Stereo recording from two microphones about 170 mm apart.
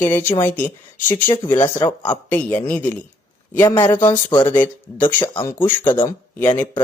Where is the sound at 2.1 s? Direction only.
10° left (ahead or behind).